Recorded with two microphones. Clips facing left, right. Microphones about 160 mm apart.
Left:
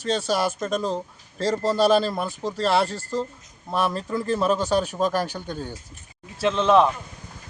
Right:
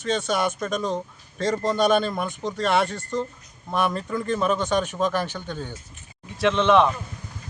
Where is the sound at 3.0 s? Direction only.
5° left (ahead or behind).